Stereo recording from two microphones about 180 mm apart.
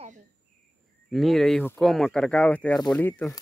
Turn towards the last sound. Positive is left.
turn(degrees=10)  # may be behind; listen again after turning